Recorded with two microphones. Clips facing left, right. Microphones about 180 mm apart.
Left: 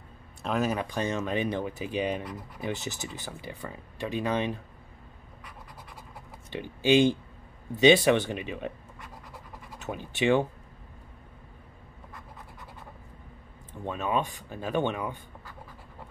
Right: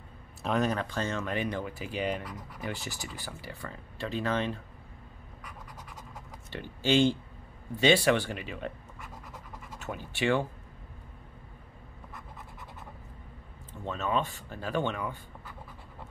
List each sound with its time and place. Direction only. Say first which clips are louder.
0.4 s speech: even; 5° left (ahead or behind)
6.5 s speech: left 4 dB; 15° left (ahead or behind)
9.3 s scratch: even; 15° left (ahead or behind)
13.8 s speech: left 1 dB; 15° left (ahead or behind)